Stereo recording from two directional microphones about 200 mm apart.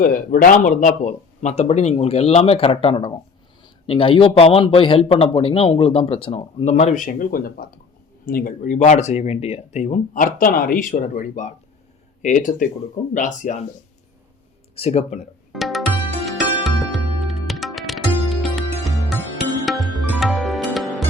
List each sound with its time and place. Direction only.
0.0 s a man's voice: 45° left (ahead or behind)
14.8 s speech: 30° left (ahead or behind)
15.5 s music: centre (ahead or behind)